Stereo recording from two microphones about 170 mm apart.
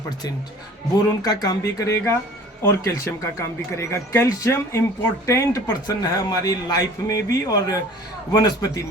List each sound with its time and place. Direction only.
1.2 s a man's voice: 20° left (ahead or behind)